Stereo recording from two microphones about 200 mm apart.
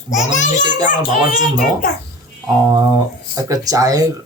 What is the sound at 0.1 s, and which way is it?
Speech, 35° left (ahead or behind).